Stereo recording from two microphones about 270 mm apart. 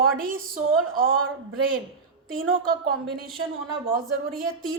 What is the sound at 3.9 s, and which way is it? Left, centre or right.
Speech, right.